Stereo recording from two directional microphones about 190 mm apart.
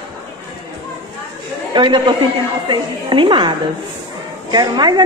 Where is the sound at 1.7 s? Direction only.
25° right (ahead or behind).